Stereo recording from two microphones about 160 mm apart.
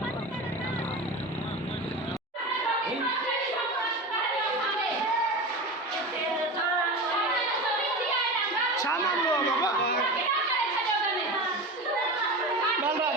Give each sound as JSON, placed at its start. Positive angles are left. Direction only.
{"t": 8.7, "sound": "speech", "side_deg": 20}